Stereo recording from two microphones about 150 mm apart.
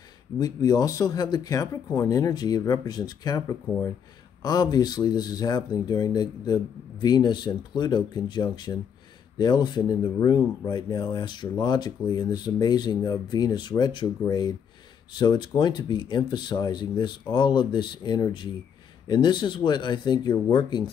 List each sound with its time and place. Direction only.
0.4 s speech: 25° left (ahead or behind)